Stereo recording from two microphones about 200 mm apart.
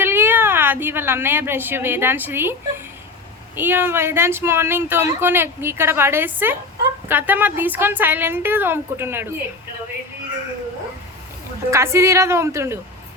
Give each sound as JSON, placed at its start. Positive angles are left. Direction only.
{"t": 0.0, "sound": "a woman's voice", "side_deg": -10}
{"t": 11.7, "sound": "speech", "side_deg": -15}